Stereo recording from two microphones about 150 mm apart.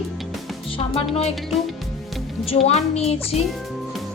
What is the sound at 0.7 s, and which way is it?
Music, 40° left (ahead or behind).